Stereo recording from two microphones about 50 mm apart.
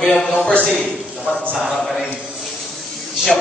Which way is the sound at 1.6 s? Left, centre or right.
Centre.